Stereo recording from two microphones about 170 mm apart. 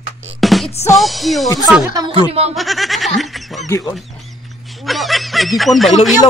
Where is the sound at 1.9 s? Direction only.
25° right (ahead or behind).